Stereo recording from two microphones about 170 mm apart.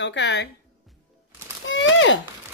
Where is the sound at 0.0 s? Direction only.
90° left.